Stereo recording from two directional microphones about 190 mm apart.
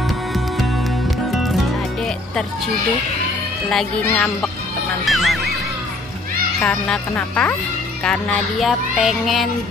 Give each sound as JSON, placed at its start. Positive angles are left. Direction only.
{"t": 1.3, "sound": "music", "side_deg": 0}
{"t": 3.7, "sound": "music", "side_deg": 5}
{"t": 6.6, "sound": "music", "side_deg": 5}